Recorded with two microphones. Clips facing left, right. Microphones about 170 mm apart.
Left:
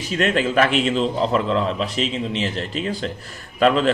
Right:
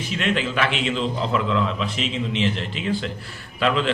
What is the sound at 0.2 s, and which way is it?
A man's voice, 45° left (ahead or behind).